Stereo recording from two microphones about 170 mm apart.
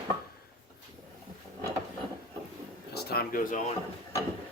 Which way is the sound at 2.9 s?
70° left (ahead or behind).